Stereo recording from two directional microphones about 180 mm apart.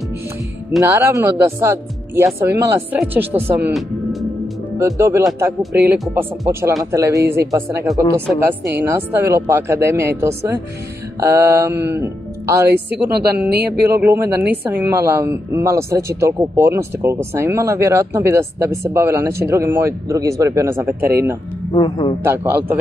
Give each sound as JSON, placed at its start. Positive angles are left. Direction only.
{"t": 0.7, "sound": "speech", "side_deg": -15}
{"t": 3.7, "sound": "music", "side_deg": 0}
{"t": 4.7, "sound": "speech", "side_deg": -15}
{"t": 13.5, "sound": "speech", "side_deg": -60}
{"t": 14.0, "sound": "speech", "side_deg": -10}
{"t": 21.7, "sound": "a man's voice", "side_deg": 25}
{"t": 22.2, "sound": "speech", "side_deg": -15}